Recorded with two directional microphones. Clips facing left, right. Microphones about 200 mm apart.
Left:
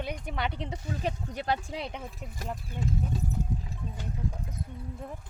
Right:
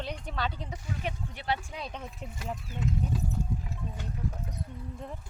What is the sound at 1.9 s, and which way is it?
Speech, 10° left (ahead or behind).